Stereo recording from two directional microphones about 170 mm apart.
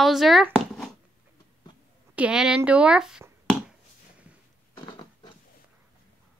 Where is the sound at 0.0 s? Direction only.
Centre (ahead or behind).